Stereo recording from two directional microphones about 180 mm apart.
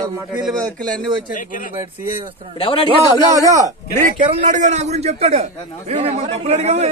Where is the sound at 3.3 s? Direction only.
20° right (ahead or behind).